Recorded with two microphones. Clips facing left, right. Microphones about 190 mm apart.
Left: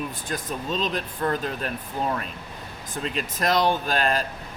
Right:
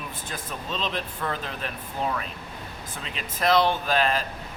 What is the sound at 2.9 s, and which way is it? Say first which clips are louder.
Speech: left 10 dB; 45° left (ahead or behind).